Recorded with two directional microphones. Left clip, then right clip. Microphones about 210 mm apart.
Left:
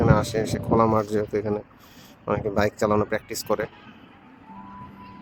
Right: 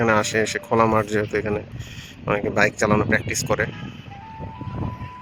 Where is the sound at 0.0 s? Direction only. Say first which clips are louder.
Right 3 dB; centre (ahead or behind).